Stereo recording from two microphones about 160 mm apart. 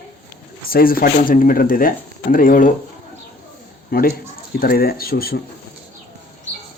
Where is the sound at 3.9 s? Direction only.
70° left (ahead or behind).